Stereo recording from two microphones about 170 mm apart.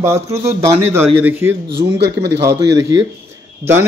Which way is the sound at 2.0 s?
80° right.